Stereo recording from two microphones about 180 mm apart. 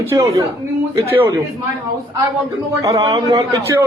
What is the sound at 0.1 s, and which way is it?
A man's voice, 20° right (ahead or behind).